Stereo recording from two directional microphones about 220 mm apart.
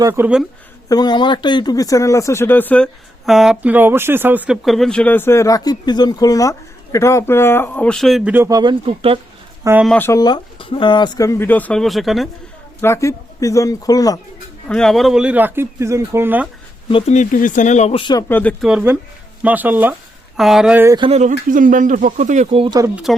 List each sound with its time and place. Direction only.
0.0 s speech: 10° right (ahead or behind)
0.9 s speech: 20° left (ahead or behind); by 9.1 s 25° right (ahead or behind)
9.6 s speech: 5° right (ahead or behind)
9.9 s speech: 10° left (ahead or behind)
12.8 s speech: 10° left (ahead or behind)
14.7 s speech: 5° left (ahead or behind)
16.9 s speech: 30° left (ahead or behind); by 22.9 s 20° right (ahead or behind)
23.1 s speech: centre (ahead or behind)